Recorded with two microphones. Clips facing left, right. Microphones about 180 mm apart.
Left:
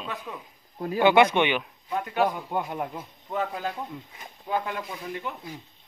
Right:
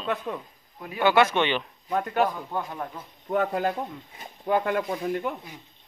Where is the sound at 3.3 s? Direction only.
55° right (ahead or behind).